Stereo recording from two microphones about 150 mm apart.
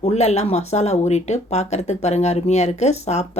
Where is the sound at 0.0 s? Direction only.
45° left (ahead or behind).